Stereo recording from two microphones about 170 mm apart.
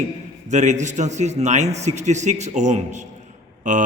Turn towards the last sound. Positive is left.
turn(degrees=-45)  # may be behind; listen again after turning